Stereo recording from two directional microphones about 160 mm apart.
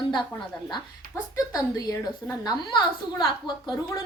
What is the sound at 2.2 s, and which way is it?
Speech, 25° left (ahead or behind).